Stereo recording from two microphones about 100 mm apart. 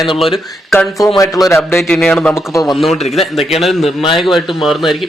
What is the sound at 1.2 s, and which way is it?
Speech, 35° left (ahead or behind).